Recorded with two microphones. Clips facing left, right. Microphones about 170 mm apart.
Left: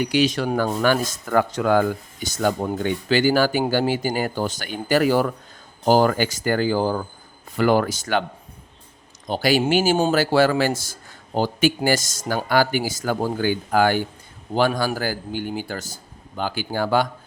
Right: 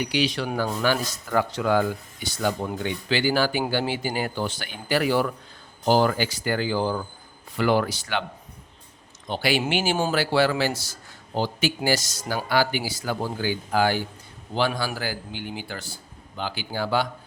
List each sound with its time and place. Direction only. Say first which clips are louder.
0.0 s speech: left 5 dB; 45° left (ahead or behind)
9.2 s speech: left 5 dB; 40° left (ahead or behind)